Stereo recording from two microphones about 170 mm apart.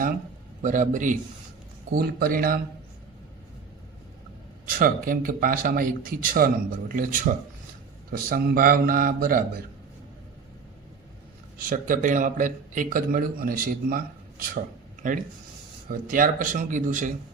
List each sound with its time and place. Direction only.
0.6 s a man's voice: 50° right (ahead or behind)
1.9 s speech: 65° right (ahead or behind)
4.7 s speech: 55° right (ahead or behind)
11.5 s a man's voice: 55° right (ahead or behind)